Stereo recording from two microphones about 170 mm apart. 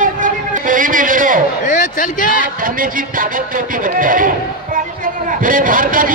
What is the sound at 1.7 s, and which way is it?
Speech, 50° left (ahead or behind).